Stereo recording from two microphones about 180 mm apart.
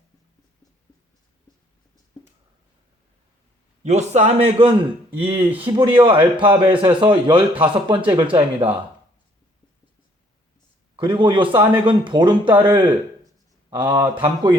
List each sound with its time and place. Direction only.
3.8 s a man's voice: 40° right (ahead or behind)
10.9 s a man's voice: 25° right (ahead or behind)
13.7 s speech: 25° right (ahead or behind)